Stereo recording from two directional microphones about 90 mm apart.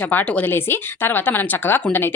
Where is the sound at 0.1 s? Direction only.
20° left (ahead or behind).